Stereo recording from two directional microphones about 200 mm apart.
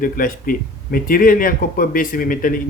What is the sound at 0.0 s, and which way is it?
Speech, 45° left (ahead or behind).